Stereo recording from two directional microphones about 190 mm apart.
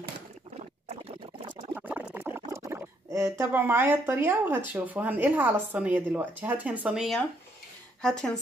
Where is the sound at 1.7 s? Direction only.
10° right (ahead or behind).